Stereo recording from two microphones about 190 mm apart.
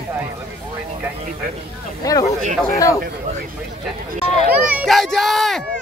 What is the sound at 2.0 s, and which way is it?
Speech, 20° left (ahead or behind).